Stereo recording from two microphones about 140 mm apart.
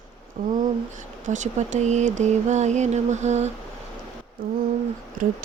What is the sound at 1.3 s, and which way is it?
Speech, 60° right (ahead or behind).